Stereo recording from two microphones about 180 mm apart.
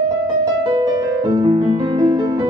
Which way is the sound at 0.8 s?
25° right (ahead or behind).